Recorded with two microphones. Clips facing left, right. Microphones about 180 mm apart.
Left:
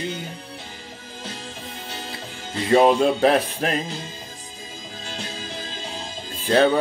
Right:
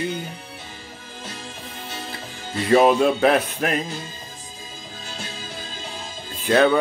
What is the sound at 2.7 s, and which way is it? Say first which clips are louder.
Music: even; 30° left (ahead or behind).